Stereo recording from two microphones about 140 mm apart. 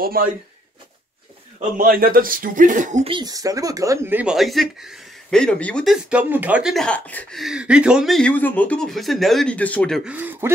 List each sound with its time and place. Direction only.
0.0 s speech: 90° right
1.8 s speech: 90° right; by 3.0 s 70° right (ahead or behind)
3.0 s speech: 35° right (ahead or behind)
4.2 s speech: 5° right (ahead or behind)
6.0 s speech: 10° right (ahead or behind)
6.7 s speech: 5° left (ahead or behind)
7.3 s speech: 5° right (ahead or behind)
10.0 s speech: 10° right (ahead or behind)